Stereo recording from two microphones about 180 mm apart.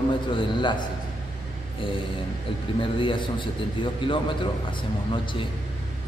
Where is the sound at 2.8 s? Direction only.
30° left (ahead or behind).